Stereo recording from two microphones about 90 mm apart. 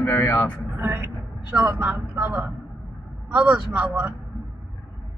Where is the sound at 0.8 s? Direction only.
25° right (ahead or behind).